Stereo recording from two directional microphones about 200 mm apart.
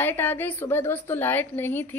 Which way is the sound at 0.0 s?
10° left (ahead or behind).